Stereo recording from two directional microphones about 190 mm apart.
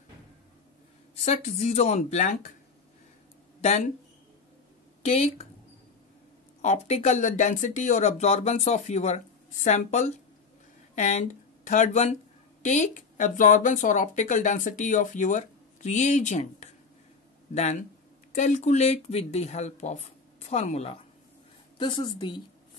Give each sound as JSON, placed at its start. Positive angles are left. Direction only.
{"t": 1.1, "sound": "speech", "side_deg": 35}
{"t": 5.0, "sound": "speech", "side_deg": 35}
{"t": 6.6, "sound": "a woman's voice", "side_deg": 35}